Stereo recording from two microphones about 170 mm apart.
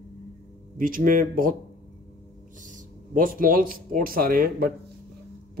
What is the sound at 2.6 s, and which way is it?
Speech, 50° right (ahead or behind).